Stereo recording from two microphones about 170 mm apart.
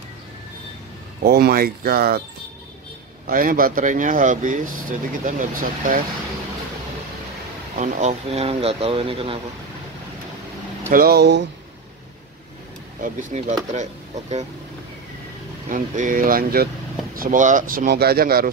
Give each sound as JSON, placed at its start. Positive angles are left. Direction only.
{"t": 1.2, "sound": "speech", "side_deg": -65}
{"t": 3.3, "sound": "speech", "side_deg": -55}
{"t": 7.8, "sound": "speech", "side_deg": -45}
{"t": 10.9, "sound": "speech", "side_deg": -60}
{"t": 13.0, "sound": "speech", "side_deg": -45}
{"t": 15.7, "sound": "speech", "side_deg": -50}